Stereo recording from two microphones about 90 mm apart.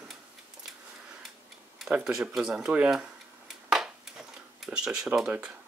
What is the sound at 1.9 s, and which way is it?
Speech, 5° right (ahead or behind).